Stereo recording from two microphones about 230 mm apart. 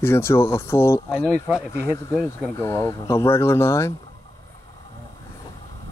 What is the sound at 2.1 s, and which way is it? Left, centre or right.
Speech, centre.